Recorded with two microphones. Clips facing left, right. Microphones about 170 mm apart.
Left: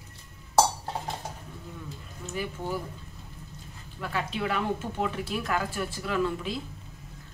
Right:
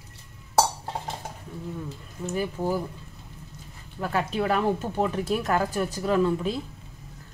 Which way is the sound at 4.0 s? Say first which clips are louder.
Right 5 dB; 40° right (ahead or behind).